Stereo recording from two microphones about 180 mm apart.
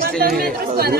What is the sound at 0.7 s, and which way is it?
Speech, 60° right (ahead or behind).